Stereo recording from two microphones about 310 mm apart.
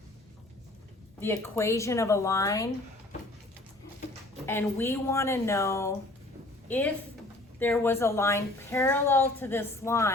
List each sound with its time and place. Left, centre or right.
1.2 s a woman's voice: centre
4.4 s a woman's voice: centre